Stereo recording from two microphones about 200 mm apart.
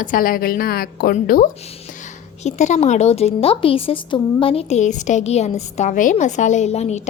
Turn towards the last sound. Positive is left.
turn(degrees=35)  # may be behind; listen again after turning